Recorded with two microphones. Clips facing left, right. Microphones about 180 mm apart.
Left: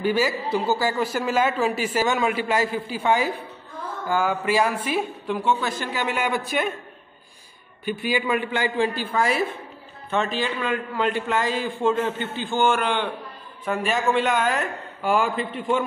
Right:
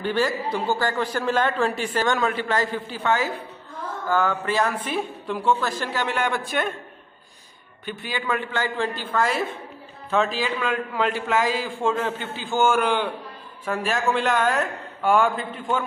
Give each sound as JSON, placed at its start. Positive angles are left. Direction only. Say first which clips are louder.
{"t": 0.0, "sound": "a man's voice", "louder": "left 1 dB", "side_deg": 10}
{"t": 7.8, "sound": "a man's voice", "louder": "left 6 dB", "side_deg": 10}
{"t": 10.1, "sound": "a man's voice", "louder": "right 1 dB", "side_deg": 0}